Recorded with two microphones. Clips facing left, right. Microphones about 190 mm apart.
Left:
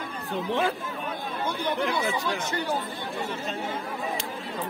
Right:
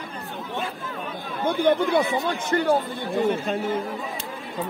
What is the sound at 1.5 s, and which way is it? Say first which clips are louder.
Speech: right 9 dB; 55° right (ahead or behind).